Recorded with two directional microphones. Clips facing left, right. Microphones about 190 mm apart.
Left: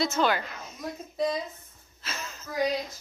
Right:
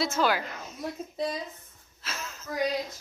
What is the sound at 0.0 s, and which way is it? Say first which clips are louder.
Speech: left 1 dB; 5° right (ahead or behind).